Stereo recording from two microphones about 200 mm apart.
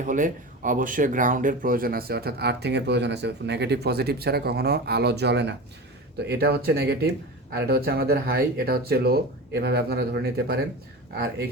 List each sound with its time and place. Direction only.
0.0 s speech: 40° right (ahead or behind)